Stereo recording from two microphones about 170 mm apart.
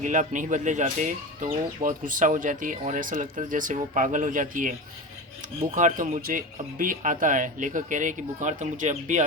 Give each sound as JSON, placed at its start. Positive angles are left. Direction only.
{"t": 0.0, "sound": "speech", "side_deg": -45}
{"t": 5.7, "sound": "speech", "side_deg": -50}